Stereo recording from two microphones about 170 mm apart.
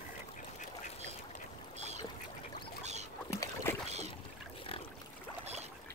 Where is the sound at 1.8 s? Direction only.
40° right (ahead or behind).